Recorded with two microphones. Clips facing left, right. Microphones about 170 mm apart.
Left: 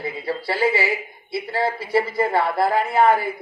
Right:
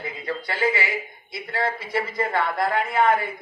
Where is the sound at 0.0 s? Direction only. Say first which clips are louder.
Left 4 dB; 35° left (ahead or behind).